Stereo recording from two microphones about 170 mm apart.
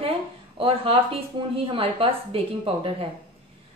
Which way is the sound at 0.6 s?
30° right (ahead or behind).